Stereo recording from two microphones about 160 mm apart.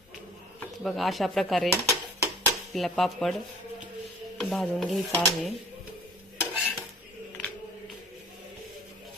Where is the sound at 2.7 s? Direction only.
Centre (ahead or behind).